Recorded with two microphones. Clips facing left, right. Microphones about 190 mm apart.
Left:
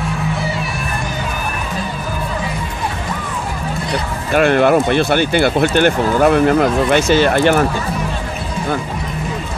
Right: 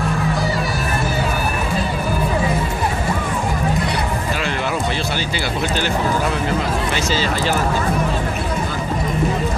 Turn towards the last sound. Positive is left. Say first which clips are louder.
# left 7 dB
turn(degrees=60)  # may be behind; listen again after turning